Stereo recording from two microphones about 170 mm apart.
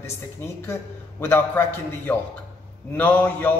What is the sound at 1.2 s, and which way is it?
A man's voice, 15° left (ahead or behind).